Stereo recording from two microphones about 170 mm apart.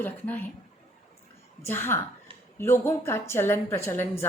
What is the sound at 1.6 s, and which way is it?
A woman's voice, 15° left (ahead or behind).